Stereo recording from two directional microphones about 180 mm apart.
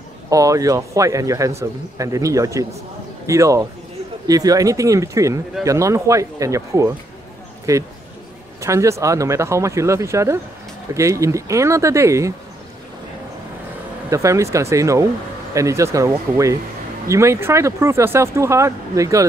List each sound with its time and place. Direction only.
0.3 s speech: 20° right (ahead or behind)
14.1 s speech: 15° right (ahead or behind)